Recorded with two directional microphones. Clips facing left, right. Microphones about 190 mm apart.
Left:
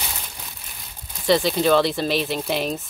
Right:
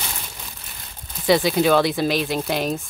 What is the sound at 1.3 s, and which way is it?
Speech, 5° right (ahead or behind).